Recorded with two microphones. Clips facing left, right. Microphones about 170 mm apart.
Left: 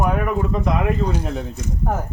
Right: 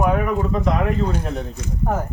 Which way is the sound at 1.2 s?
Centre (ahead or behind).